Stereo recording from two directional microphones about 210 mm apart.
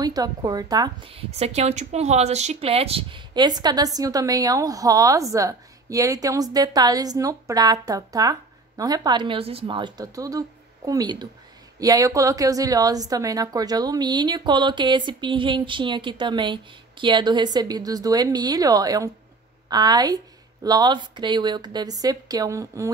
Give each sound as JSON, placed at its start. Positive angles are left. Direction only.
{"t": 0.0, "sound": "a woman's voice", "side_deg": -15}